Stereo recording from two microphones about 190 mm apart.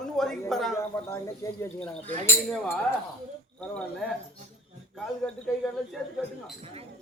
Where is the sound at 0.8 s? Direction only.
15° left (ahead or behind).